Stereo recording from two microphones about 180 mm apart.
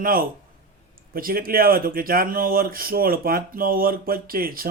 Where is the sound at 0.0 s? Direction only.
55° right (ahead or behind).